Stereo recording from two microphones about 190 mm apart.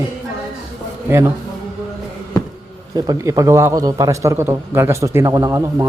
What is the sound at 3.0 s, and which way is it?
A man's voice, 20° right (ahead or behind).